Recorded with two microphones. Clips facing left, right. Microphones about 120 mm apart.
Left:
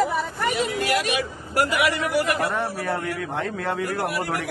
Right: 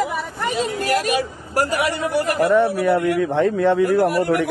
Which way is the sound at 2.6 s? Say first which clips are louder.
Right 9 dB; 75° right (ahead or behind).